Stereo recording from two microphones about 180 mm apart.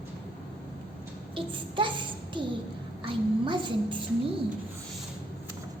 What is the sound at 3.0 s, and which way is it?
A child's voice, 25° right (ahead or behind).